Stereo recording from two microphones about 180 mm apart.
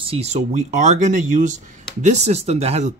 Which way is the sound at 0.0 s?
35° right (ahead or behind).